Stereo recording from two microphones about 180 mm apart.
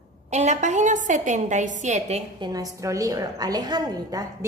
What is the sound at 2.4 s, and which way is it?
A woman's voice, 20° right (ahead or behind).